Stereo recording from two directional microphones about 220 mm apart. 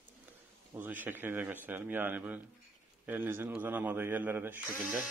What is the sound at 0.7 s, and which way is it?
Speech, 10° right (ahead or behind).